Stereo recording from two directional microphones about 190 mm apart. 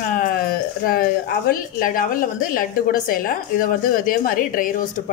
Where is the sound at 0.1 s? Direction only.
45° left (ahead or behind).